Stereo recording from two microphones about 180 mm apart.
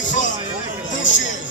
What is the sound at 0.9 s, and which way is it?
Speech, 90° left.